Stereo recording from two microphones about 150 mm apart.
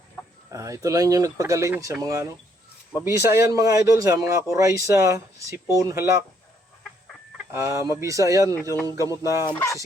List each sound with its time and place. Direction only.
0.5 s speech: 20° right (ahead or behind)
7.5 s speech: 20° right (ahead or behind)
9.6 s fowl: 20° left (ahead or behind)